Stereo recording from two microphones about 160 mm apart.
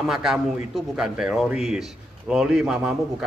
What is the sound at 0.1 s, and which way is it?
A man's voice, centre (ahead or behind).